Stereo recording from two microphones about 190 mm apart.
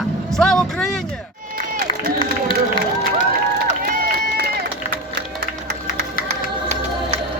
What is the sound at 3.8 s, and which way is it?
Run, 50° right (ahead or behind).